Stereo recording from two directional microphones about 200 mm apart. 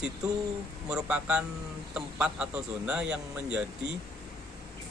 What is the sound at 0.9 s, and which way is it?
Speech, 5° right (ahead or behind).